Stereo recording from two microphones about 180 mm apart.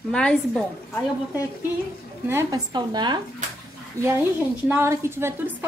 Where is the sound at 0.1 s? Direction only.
5° left (ahead or behind).